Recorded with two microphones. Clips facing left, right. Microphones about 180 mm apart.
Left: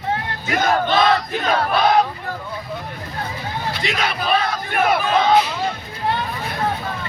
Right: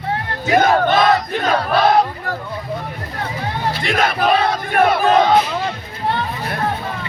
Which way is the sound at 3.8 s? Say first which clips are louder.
Right 7 dB; 50° right (ahead or behind).